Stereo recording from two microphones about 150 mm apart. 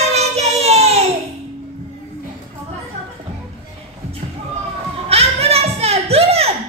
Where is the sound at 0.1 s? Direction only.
45° right (ahead or behind).